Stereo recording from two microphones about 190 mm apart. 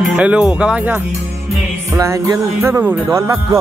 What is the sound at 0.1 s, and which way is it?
Speech, 5° right (ahead or behind).